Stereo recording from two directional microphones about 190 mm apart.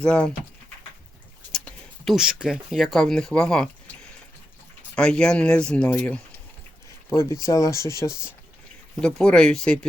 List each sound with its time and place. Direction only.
0.0 s speech: 5° left (ahead or behind)
1.5 s speech: centre (ahead or behind)
4.9 s speech: 5° left (ahead or behind)
9.0 s speech: 5° left (ahead or behind)